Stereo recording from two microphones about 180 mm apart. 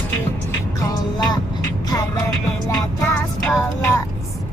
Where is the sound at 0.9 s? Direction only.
20° left (ahead or behind).